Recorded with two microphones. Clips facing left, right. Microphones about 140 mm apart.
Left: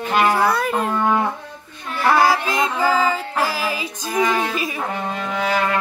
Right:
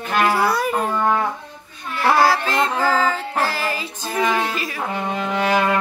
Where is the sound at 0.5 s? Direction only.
Centre (ahead or behind).